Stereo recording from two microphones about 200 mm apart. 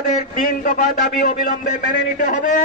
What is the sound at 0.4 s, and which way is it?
A man's voice, 45° left (ahead or behind).